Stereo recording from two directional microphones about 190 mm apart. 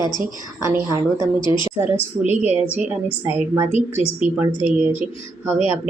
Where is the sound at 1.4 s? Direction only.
25° left (ahead or behind).